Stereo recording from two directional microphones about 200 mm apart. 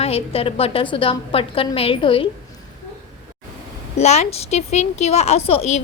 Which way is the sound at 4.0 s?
35° left (ahead or behind).